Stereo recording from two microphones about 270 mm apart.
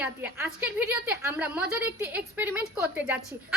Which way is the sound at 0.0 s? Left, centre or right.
Centre.